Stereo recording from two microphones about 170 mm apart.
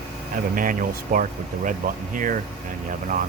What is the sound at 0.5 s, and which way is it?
Speech, 55° right (ahead or behind).